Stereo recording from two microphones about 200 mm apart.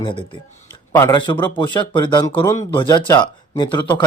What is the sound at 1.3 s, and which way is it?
Speech, 25° left (ahead or behind).